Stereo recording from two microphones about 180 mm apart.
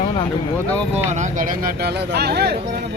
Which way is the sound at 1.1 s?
45° right (ahead or behind).